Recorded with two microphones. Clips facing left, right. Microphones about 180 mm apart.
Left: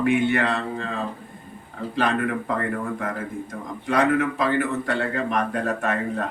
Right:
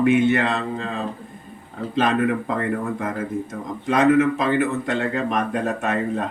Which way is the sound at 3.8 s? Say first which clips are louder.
Right 4 dB; 20° right (ahead or behind).